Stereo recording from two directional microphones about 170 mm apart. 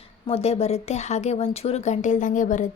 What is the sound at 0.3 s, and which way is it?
Speech, 35° left (ahead or behind).